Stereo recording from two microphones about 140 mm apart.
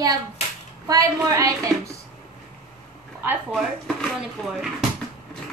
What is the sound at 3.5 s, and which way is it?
Speech, centre (ahead or behind).